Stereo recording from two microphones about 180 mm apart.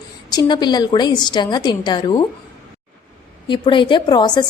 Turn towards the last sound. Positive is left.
turn(degrees=25)  # may be behind; listen again after turning